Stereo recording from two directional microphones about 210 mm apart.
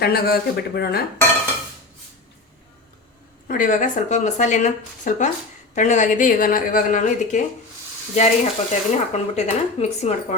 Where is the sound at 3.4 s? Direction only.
40° left (ahead or behind).